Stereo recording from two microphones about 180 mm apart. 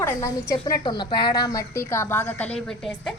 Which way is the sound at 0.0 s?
15° left (ahead or behind).